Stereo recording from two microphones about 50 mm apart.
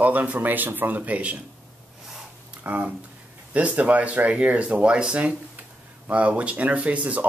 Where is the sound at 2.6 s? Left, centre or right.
Right.